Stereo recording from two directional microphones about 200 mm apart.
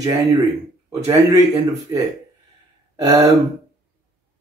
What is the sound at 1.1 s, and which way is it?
Speech, 15° right (ahead or behind).